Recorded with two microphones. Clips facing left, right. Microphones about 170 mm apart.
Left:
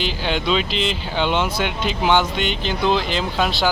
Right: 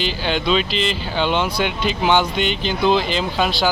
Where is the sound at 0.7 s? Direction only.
60° left (ahead or behind).